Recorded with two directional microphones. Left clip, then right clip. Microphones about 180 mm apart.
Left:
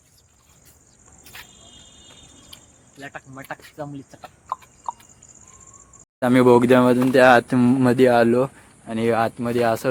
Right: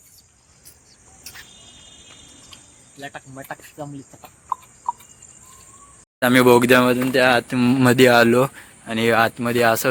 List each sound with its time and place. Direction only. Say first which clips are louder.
3.0 s speech: right 2 dB; 50° right (ahead or behind)
3.8 s speech: left 1 dB; 15° right (ahead or behind)
6.1 s speech: right 1 dB; 10° left (ahead or behind)
7.1 s speech: left 3 dB; 35° left (ahead or behind)
7.6 s speech: right 2 dB; 5° left (ahead or behind)